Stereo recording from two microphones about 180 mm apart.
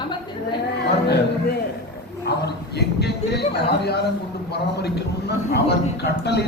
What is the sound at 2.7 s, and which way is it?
Speech, 65° left (ahead or behind).